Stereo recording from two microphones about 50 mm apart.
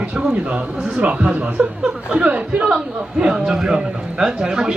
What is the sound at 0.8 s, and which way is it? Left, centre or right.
A woman's voice, centre.